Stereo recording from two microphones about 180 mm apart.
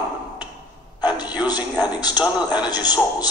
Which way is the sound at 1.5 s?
20° left (ahead or behind).